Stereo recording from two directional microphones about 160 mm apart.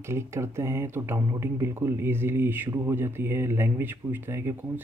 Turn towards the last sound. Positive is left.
turn(degrees=-15)  # may be behind; listen again after turning